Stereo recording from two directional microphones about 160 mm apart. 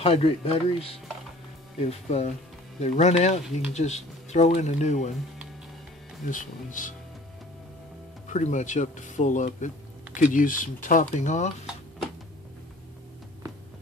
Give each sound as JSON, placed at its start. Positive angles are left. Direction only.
{"t": 0.0, "sound": "speech", "side_deg": 40}
{"t": 6.3, "sound": "speech", "side_deg": 55}
{"t": 8.3, "sound": "speech", "side_deg": 50}